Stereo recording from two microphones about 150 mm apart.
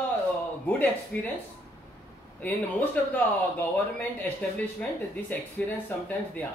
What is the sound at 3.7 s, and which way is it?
Speech, 10° left (ahead or behind).